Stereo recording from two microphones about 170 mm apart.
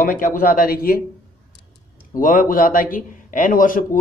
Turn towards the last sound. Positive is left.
turn(degrees=55)  # may be behind; listen again after turning